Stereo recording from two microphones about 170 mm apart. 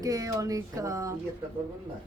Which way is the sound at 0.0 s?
20° right (ahead or behind).